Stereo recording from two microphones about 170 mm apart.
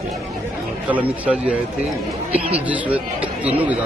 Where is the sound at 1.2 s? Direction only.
5° right (ahead or behind).